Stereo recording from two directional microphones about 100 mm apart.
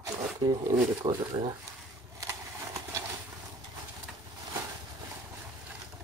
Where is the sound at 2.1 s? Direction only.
35° right (ahead or behind).